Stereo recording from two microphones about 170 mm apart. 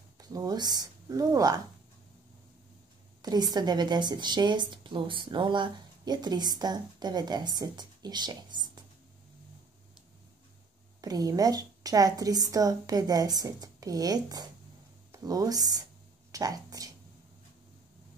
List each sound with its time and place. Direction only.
0.2 s speech: 20° right (ahead or behind)
3.2 s a woman's voice: 25° right (ahead or behind)
11.0 s a woman's voice: 20° right (ahead or behind)